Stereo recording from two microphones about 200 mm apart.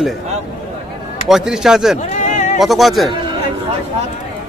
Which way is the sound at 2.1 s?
40° left (ahead or behind).